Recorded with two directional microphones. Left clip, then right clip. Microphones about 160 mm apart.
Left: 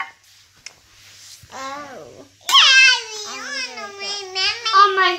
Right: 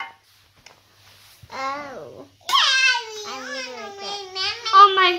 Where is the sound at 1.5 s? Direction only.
20° right (ahead or behind).